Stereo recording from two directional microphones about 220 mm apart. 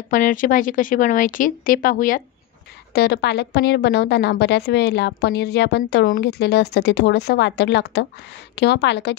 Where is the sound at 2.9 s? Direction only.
50° left (ahead or behind).